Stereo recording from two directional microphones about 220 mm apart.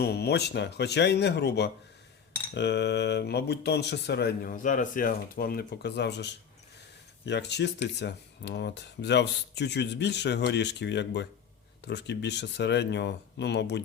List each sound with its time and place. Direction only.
0.0 s speech: 50° left (ahead or behind)